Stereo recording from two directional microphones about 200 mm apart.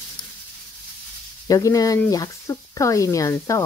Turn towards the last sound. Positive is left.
turn(degrees=15)  # may be behind; listen again after turning